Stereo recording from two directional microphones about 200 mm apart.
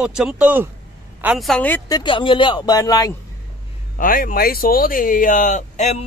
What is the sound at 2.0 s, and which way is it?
Speech, 25° left (ahead or behind).